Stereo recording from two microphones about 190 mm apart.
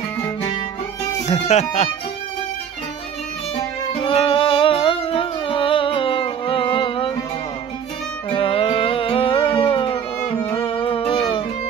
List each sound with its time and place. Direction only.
1.2 s speech: 35° left (ahead or behind)
3.5 s music: 30° left (ahead or behind)
8.3 s music: 30° left (ahead or behind)